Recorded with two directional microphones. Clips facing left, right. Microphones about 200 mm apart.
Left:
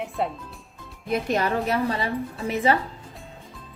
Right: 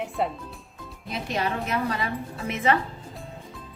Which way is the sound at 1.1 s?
50° left (ahead or behind).